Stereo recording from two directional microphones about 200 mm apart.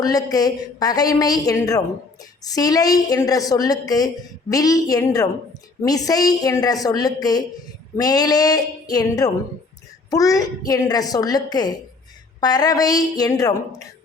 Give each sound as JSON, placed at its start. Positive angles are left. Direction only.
{"t": 0.0, "sound": "a woman's voice", "side_deg": 20}